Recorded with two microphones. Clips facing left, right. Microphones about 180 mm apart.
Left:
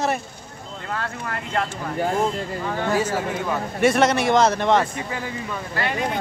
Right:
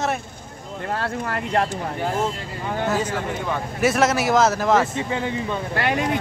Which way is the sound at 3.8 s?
5° right (ahead or behind).